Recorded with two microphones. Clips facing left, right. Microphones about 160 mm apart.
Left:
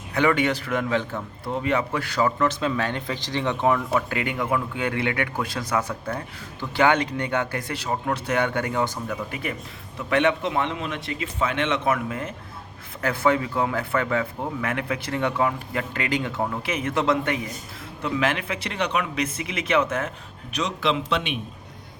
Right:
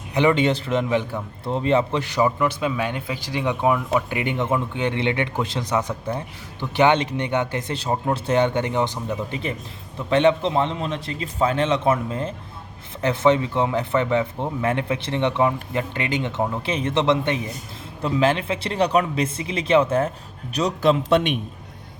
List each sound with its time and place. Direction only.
0.1 s a man's voice: 20° right (ahead or behind)
1.5 s a man's voice: 30° right (ahead or behind); by 21.3 s 50° right (ahead or behind)